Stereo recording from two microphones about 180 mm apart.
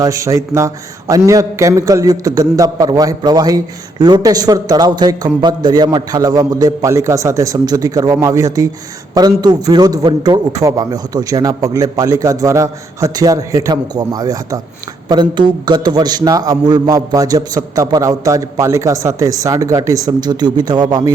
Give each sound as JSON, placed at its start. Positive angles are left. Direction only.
{"t": 0.0, "sound": "a man's voice", "side_deg": -20}